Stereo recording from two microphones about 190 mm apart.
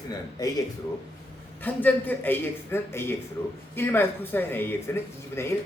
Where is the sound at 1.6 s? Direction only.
10° left (ahead or behind).